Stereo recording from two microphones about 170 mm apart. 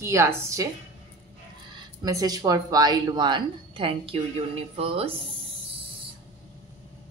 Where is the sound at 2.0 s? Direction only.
20° right (ahead or behind).